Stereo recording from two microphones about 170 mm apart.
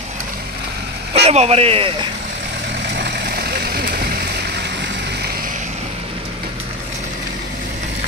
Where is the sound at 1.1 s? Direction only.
40° right (ahead or behind).